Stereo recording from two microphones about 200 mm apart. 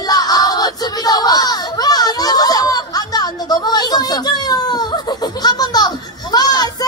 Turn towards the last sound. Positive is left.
turn(degrees=20)  # may be behind; listen again after turning